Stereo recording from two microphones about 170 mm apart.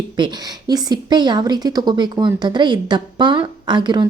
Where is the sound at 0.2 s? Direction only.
25° right (ahead or behind).